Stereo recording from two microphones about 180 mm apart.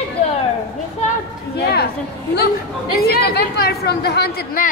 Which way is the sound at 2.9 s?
65° left (ahead or behind).